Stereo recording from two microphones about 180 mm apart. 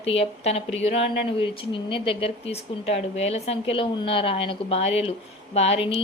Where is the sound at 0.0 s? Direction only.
35° left (ahead or behind).